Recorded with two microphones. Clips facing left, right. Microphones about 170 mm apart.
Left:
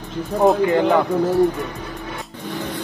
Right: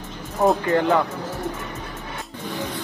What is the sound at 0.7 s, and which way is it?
Speech, 15° left (ahead or behind).